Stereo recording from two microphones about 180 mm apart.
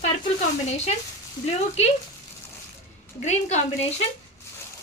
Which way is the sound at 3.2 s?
40° left (ahead or behind).